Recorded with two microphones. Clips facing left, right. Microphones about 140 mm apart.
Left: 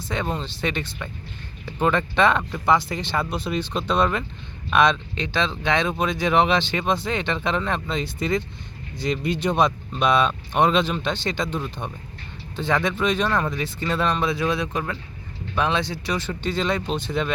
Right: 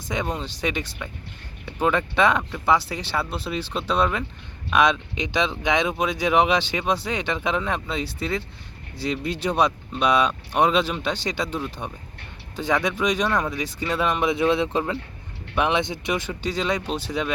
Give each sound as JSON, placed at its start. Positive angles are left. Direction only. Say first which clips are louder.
{"t": 0.3, "sound": "speech", "louder": "even", "side_deg": -10}
{"t": 13.2, "sound": "speech", "louder": "even", "side_deg": 0}